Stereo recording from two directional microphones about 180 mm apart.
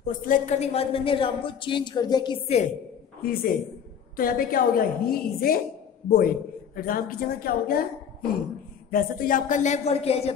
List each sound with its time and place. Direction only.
0.0 s a woman's voice: 50° left (ahead or behind); by 2.6 s 30° left (ahead or behind)
4.2 s a woman's voice: 55° left (ahead or behind); by 10.3 s 35° left (ahead or behind)